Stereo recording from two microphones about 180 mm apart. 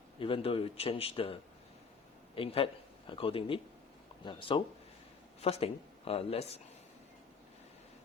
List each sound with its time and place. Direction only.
0.2 s speech: 30° left (ahead or behind)